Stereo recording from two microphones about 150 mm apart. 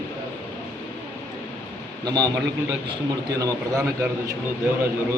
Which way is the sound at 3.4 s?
20° right (ahead or behind).